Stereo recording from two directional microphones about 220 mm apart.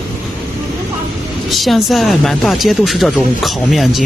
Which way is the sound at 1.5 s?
Centre (ahead or behind).